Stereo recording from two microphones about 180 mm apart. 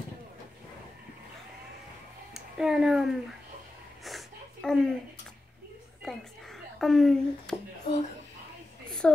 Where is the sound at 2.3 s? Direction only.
5° right (ahead or behind).